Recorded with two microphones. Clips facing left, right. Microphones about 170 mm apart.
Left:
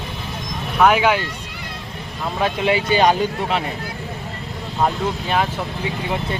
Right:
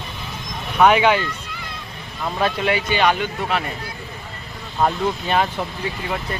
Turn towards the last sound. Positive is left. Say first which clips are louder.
# right 1 dB
turn(degrees=5)  # may be behind; listen again after turning